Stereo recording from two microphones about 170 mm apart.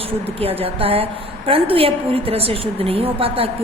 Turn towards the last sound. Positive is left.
turn(degrees=-35)  # may be behind; listen again after turning